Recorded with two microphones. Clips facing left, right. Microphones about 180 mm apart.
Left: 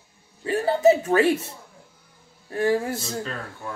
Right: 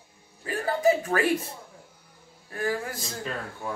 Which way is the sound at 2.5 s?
30° left (ahead or behind).